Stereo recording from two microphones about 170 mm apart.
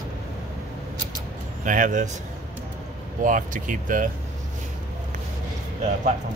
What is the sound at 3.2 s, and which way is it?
Speech, 50° right (ahead or behind).